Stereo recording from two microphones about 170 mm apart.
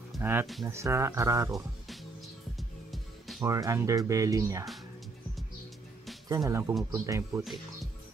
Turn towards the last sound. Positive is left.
turn(degrees=-15)  # may be behind; listen again after turning